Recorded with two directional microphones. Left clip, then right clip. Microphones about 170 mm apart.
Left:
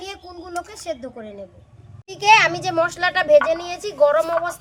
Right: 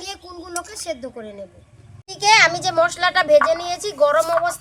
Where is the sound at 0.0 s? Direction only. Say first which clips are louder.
Right 1 dB; centre (ahead or behind).